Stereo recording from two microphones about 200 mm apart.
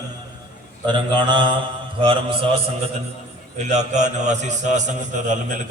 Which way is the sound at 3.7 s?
35° right (ahead or behind).